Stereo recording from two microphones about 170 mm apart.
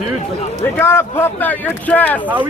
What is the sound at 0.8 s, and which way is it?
Speech, 15° left (ahead or behind).